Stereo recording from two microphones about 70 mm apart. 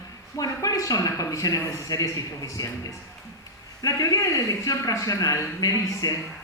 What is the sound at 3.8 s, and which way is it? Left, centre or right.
A man's voice, left.